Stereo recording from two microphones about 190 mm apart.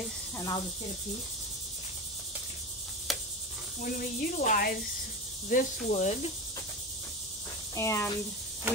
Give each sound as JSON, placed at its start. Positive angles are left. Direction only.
{"t": 0.4, "sound": "speech", "side_deg": 25}
{"t": 3.8, "sound": "speech", "side_deg": 45}
{"t": 5.5, "sound": "cricket", "side_deg": 40}
{"t": 7.7, "sound": "speech", "side_deg": 15}